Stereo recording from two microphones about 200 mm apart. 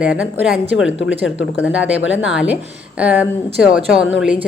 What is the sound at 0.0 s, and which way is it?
Speech, 5° right (ahead or behind).